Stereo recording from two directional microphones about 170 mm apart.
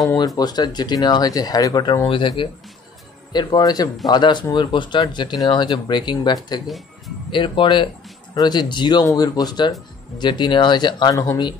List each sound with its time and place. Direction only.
0.4 s speech: 25° left (ahead or behind)